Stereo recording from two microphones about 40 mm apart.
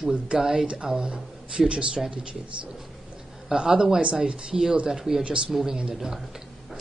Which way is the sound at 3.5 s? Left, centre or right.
Right.